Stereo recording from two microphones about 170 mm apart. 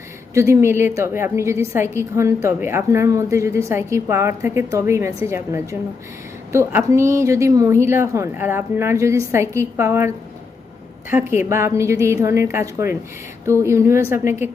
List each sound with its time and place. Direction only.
0.3 s a woman's voice: 15° right (ahead or behind)
11.1 s a woman's voice: 15° right (ahead or behind)